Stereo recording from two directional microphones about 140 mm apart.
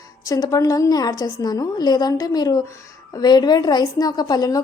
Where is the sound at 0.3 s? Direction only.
25° left (ahead or behind).